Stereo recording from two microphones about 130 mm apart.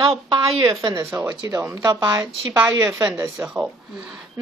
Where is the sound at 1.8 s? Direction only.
35° right (ahead or behind).